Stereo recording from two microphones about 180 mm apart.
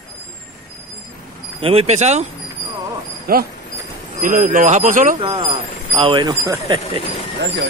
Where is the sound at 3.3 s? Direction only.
55° right (ahead or behind).